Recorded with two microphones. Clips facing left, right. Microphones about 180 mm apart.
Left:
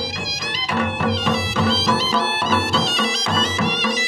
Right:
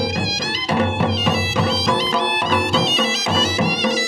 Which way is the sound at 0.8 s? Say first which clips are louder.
Right 1 dB; 25° right (ahead or behind).